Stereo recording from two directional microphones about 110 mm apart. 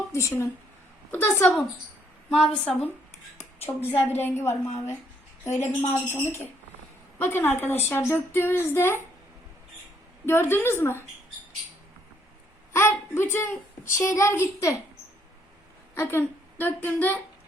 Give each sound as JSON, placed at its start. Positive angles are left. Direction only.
{"t": 0.1, "sound": "speech", "side_deg": 25}
{"t": 2.3, "sound": "a woman's voice", "side_deg": 5}
{"t": 3.3, "sound": "a sound", "side_deg": 20}
{"t": 3.8, "sound": "speech", "side_deg": 20}
{"t": 10.2, "sound": "speech", "side_deg": 20}
{"t": 12.7, "sound": "speech", "side_deg": 20}
{"t": 16.0, "sound": "a woman's voice", "side_deg": 20}